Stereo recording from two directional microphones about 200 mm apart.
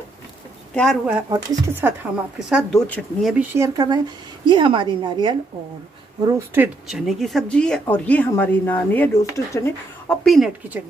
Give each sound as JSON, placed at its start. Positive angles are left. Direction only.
{"t": 0.7, "sound": "speech", "side_deg": 0}
{"t": 1.3, "sound": "speech", "side_deg": -15}
{"t": 3.5, "sound": "a woman's voice", "side_deg": -15}
{"t": 6.2, "sound": "speech", "side_deg": -10}
{"t": 10.2, "sound": "speech", "side_deg": 0}